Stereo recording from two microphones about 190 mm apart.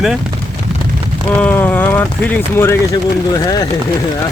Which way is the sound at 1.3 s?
10° left (ahead or behind).